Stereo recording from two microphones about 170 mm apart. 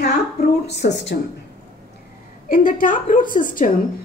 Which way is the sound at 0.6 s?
85° left.